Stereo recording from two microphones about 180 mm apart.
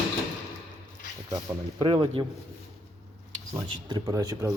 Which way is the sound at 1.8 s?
25° right (ahead or behind).